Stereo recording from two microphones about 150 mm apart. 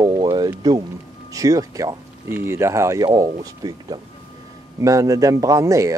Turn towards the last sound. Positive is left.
turn(degrees=-20)  # may be behind; listen again after turning